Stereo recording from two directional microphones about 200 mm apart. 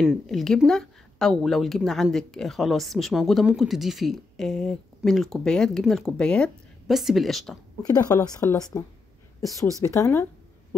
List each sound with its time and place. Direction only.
0.0 s speech: centre (ahead or behind)
7.8 s a woman's voice: 15° left (ahead or behind)